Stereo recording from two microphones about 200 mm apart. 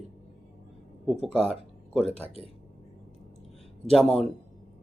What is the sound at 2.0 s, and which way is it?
Speech, 30° left (ahead or behind).